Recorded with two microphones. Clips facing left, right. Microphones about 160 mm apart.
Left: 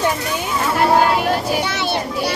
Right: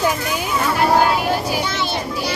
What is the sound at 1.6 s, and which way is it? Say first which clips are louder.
Speech: left 2 dB; 65° left (ahead or behind).